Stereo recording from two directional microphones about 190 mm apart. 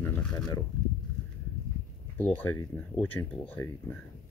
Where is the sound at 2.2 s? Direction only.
10° left (ahead or behind).